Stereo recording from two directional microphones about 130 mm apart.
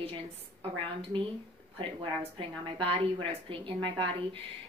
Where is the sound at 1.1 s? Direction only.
40° right (ahead or behind).